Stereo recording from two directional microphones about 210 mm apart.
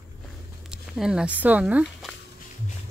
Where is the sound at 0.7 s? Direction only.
5° right (ahead or behind).